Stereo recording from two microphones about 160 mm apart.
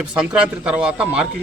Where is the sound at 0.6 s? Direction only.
5° right (ahead or behind).